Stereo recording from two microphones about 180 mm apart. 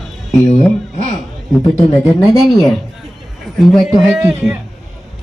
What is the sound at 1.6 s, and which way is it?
Speech, 20° left (ahead or behind).